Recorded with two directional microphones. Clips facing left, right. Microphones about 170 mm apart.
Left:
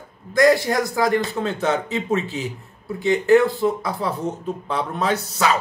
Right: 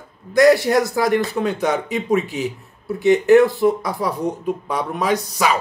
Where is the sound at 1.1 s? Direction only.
15° right (ahead or behind).